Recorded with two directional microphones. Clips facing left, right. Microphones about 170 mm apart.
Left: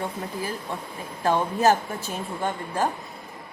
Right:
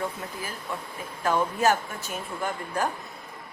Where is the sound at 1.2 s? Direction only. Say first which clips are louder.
Left 2 dB; 30° left (ahead or behind).